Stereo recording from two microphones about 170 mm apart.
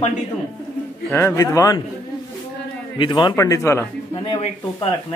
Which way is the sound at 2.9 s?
30° left (ahead or behind).